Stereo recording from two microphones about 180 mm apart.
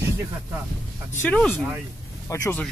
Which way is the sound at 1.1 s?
10° left (ahead or behind).